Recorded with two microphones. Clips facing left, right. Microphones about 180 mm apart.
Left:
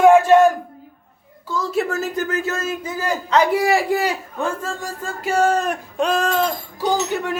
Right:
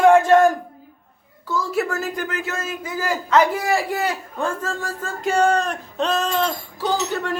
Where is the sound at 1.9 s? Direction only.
25° left (ahead or behind).